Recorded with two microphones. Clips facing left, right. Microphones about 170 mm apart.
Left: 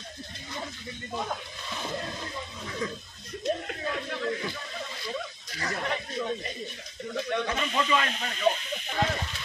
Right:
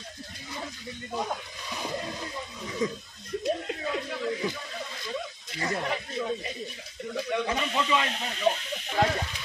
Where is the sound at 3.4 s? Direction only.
5° right (ahead or behind).